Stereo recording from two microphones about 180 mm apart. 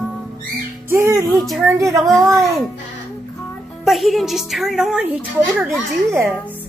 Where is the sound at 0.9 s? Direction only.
15° right (ahead or behind).